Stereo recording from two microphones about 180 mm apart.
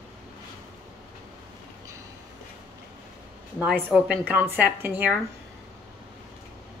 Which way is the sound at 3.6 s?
10° right (ahead or behind).